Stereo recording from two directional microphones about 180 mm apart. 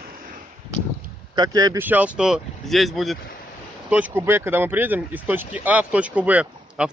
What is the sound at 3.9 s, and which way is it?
Speech, 10° right (ahead or behind).